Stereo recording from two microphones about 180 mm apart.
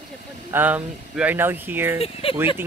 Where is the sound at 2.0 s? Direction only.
30° left (ahead or behind).